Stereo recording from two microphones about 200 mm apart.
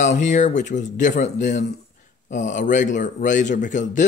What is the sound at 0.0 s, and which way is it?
Speech, 35° left (ahead or behind).